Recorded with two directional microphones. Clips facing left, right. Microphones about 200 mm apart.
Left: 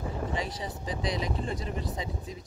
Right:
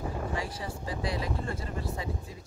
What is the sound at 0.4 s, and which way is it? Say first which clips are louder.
Speech: left 1 dB; 20° left (ahead or behind).